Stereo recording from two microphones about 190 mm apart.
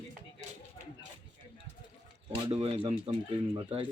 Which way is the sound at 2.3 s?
30° right (ahead or behind).